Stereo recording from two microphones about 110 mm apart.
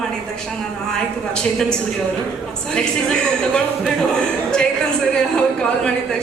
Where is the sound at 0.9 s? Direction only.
5° left (ahead or behind).